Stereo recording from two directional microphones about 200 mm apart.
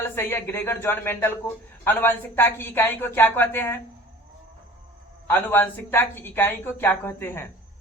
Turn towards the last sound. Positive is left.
turn(degrees=10)  # may be behind; listen again after turning